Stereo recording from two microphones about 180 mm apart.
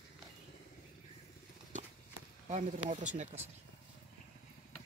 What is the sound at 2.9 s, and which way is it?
Speech, 40° right (ahead or behind).